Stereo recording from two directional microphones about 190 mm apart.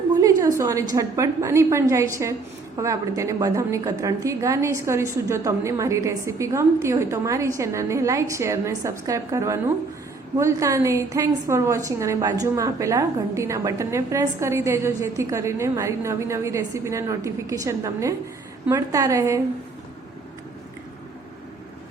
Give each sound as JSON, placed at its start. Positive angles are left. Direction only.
{"t": 0.2, "sound": "a woman's voice", "side_deg": -15}